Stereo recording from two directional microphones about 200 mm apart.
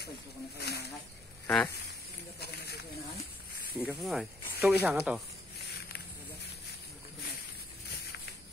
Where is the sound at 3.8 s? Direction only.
5° right (ahead or behind).